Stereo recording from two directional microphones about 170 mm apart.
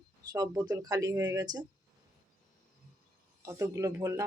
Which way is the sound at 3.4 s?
20° right (ahead or behind).